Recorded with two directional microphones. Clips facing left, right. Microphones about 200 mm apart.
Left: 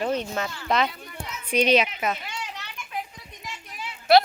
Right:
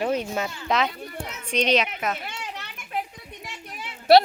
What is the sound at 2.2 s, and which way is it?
Children playing, 55° right (ahead or behind).